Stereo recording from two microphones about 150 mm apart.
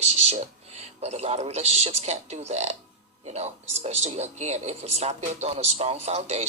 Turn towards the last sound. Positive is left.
turn(degrees=-45)  # may be behind; listen again after turning